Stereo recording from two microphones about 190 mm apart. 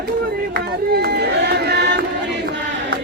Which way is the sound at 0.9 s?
55° right (ahead or behind).